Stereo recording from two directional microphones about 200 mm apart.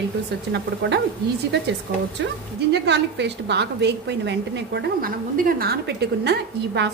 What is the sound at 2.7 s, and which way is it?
A woman's voice, 60° right (ahead or behind).